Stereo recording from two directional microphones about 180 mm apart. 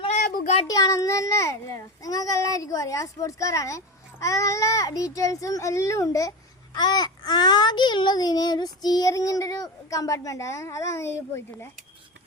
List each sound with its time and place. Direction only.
0.2 s child singing: 55° left (ahead or behind)
0.7 s a child's voice: 20° left (ahead or behind)